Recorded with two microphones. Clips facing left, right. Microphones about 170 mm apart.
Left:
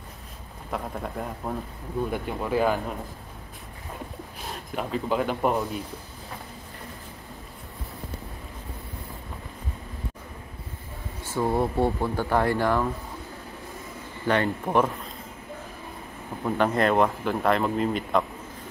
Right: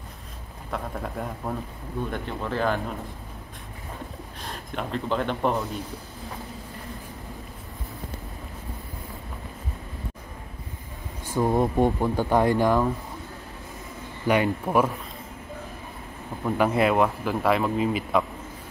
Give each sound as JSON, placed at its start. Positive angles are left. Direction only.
{"t": 0.7, "sound": "speech", "side_deg": 0}
{"t": 4.4, "sound": "speech", "side_deg": 5}
{"t": 11.2, "sound": "speech", "side_deg": -15}
{"t": 14.2, "sound": "speech", "side_deg": -10}
{"t": 16.4, "sound": "speech", "side_deg": -5}